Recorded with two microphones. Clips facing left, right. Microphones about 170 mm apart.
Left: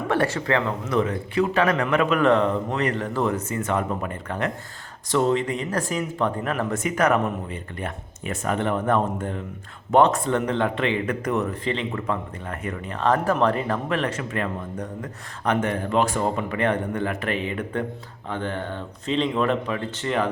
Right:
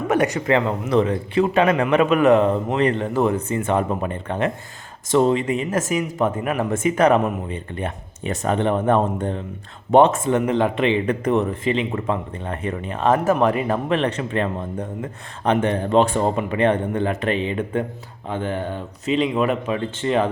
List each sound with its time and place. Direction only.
0.1 s a man's voice: 20° right (ahead or behind)
6.7 s a man's voice: 25° right (ahead or behind)
11.6 s a man's voice: 15° right (ahead or behind)
14.0 s a man's voice: 25° right (ahead or behind); by 19.7 s 10° right (ahead or behind)
19.7 s a man's voice: 20° right (ahead or behind)